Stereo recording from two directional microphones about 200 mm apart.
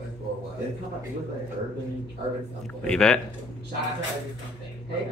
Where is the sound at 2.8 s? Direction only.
5° left (ahead or behind).